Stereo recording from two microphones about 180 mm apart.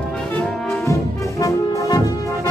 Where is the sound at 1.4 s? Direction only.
20° left (ahead or behind).